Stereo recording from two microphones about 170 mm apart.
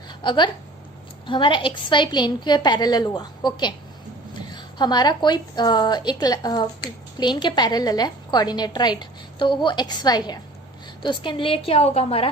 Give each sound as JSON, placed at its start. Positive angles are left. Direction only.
{"t": 0.1, "sound": "a woman's voice", "side_deg": 30}